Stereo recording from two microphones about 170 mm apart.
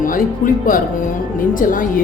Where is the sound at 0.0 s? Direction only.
55° left (ahead or behind).